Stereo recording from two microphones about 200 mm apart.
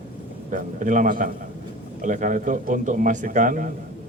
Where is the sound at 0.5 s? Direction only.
40° right (ahead or behind).